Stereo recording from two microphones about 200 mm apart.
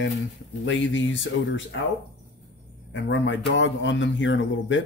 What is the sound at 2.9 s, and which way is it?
Speech, 65° left (ahead or behind).